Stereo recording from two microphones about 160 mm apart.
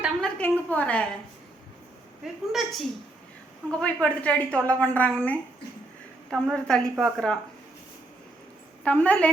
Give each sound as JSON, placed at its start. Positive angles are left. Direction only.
{"t": 0.2, "sound": "a sound", "side_deg": 10}
{"t": 0.7, "sound": "a woman's voice", "side_deg": 10}
{"t": 2.5, "sound": "a woman's voice", "side_deg": 0}
{"t": 8.8, "sound": "a woman's voice", "side_deg": 10}